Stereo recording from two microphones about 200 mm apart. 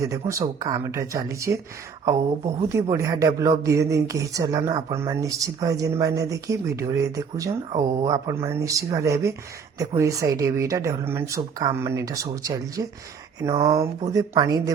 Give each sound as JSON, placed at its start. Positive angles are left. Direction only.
{"t": 0.0, "sound": "speech", "side_deg": -15}